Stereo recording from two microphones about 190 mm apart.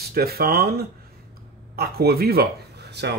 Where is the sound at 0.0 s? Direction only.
55° right (ahead or behind).